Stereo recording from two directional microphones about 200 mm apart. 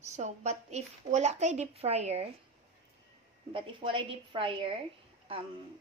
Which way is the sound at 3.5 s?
25° right (ahead or behind).